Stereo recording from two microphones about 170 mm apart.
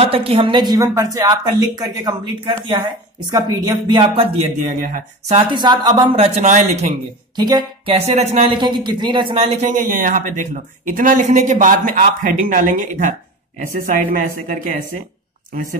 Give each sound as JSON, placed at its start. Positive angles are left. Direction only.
{"t": 0.0, "sound": "speech", "side_deg": -35}
{"t": 5.5, "sound": "speech", "side_deg": -25}
{"t": 6.1, "sound": "speech", "side_deg": -40}
{"t": 7.3, "sound": "speech", "side_deg": -25}
{"t": 7.9, "sound": "speech", "side_deg": -40}
{"t": 9.6, "sound": "speech", "side_deg": -50}